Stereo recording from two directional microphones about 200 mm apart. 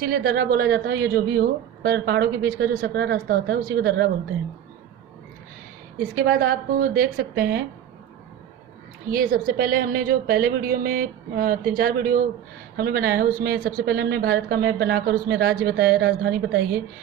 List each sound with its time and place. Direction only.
0.0 s a woman's voice: 45° right (ahead or behind)
6.0 s a woman's voice: 50° right (ahead or behind)
9.0 s a woman's voice: 45° right (ahead or behind)